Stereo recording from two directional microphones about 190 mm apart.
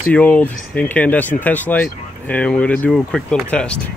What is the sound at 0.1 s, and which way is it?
Speech, 5° left (ahead or behind).